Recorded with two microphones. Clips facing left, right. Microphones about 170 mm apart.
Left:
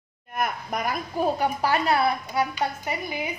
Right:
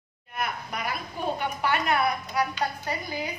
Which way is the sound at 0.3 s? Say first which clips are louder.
Left 4 dB; 45° left (ahead or behind).